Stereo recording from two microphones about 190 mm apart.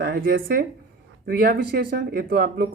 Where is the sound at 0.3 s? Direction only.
50° right (ahead or behind).